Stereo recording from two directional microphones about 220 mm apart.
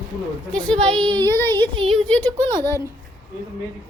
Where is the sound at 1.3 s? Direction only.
10° left (ahead or behind).